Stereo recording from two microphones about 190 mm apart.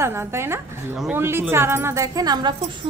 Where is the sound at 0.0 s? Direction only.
15° right (ahead or behind).